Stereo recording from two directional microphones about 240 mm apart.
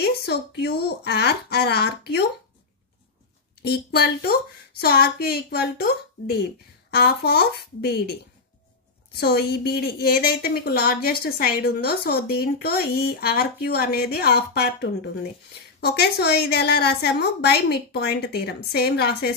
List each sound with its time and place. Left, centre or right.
0.0 s a woman's voice: left
3.6 s a woman's voice: left
9.2 s a woman's voice: left